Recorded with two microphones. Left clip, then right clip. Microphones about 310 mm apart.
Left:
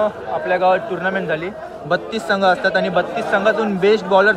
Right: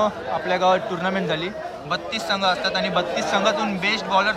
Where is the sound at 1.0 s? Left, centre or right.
Centre.